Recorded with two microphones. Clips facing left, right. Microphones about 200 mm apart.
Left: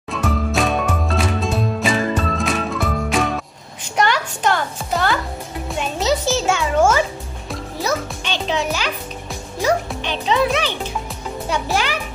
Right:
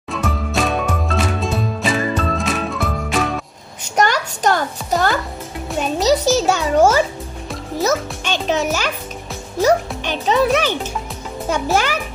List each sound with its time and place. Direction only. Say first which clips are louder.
0.1 s music: left 1 dB; centre (ahead or behind)
3.9 s a sound: right 2 dB; 40° right (ahead or behind)
5.8 s music: right 4 dB; 40° right (ahead or behind)